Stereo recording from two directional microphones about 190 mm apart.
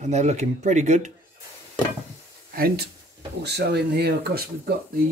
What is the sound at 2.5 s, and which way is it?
Speech, 50° right (ahead or behind).